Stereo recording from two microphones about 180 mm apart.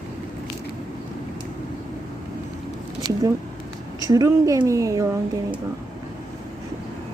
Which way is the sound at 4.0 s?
20° right (ahead or behind).